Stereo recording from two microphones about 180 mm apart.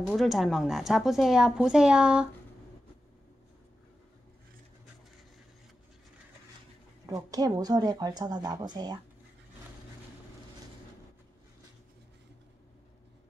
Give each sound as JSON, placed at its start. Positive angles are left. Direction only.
{"t": 0.0, "sound": "speech", "side_deg": 0}
{"t": 7.1, "sound": "a woman's voice", "side_deg": -20}